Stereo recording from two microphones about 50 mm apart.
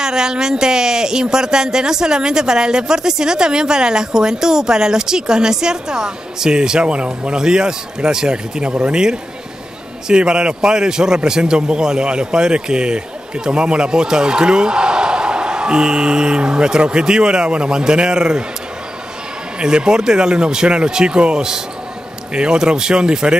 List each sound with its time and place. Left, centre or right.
0.0 s speech: centre
19.6 s speech: centre